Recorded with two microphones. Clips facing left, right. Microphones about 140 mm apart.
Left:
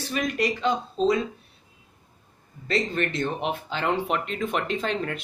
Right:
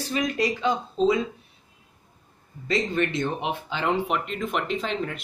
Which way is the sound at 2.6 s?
15° right (ahead or behind).